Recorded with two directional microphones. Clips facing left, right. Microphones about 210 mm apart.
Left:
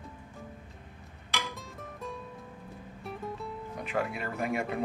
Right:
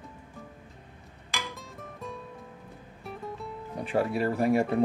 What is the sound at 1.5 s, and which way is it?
Music, centre (ahead or behind).